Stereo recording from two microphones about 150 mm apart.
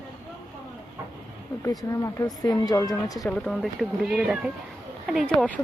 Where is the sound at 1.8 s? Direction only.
20° left (ahead or behind).